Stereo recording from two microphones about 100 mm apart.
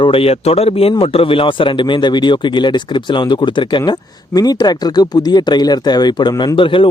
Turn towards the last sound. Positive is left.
turn(degrees=60)  # may be behind; listen again after turning